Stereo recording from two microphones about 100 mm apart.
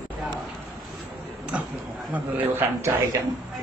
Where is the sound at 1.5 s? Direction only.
10° right (ahead or behind).